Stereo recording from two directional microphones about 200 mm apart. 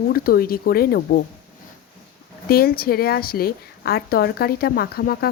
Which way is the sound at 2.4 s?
50° left (ahead or behind).